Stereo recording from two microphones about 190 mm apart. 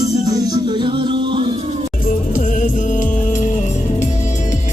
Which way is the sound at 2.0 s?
45° left (ahead or behind).